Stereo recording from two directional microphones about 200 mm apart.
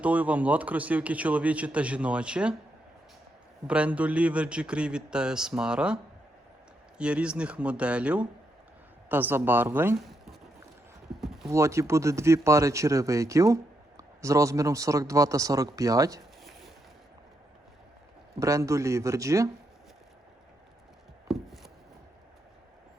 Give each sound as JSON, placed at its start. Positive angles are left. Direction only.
{"t": 0.0, "sound": "speech", "side_deg": -5}
{"t": 3.7, "sound": "a man's voice", "side_deg": -5}
{"t": 7.0, "sound": "a man's voice", "side_deg": -5}
{"t": 11.2, "sound": "clip-clop", "side_deg": 0}
{"t": 11.5, "sound": "speech", "side_deg": -15}
{"t": 16.4, "sound": "boat", "side_deg": 0}
{"t": 18.3, "sound": "speech", "side_deg": -15}
{"t": 21.2, "sound": "chopping", "side_deg": 0}